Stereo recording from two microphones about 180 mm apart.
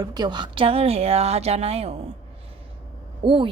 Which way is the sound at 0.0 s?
20° right (ahead or behind).